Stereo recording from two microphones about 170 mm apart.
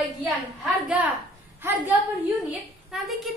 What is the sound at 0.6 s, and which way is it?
Speech, 5° right (ahead or behind).